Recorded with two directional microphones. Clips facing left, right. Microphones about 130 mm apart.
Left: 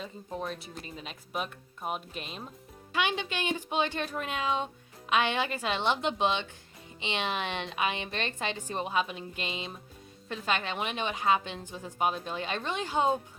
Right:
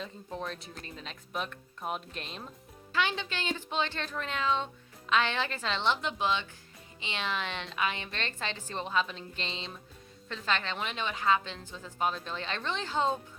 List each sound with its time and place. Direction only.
0.0 s speech: 5° left (ahead or behind)
2.9 s speech: 15° left (ahead or behind)